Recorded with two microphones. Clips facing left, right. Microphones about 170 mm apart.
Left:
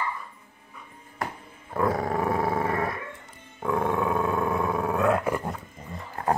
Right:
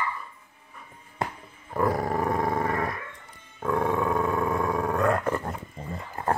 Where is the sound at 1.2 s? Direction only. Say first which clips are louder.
Right 2 dB; 25° right (ahead or behind).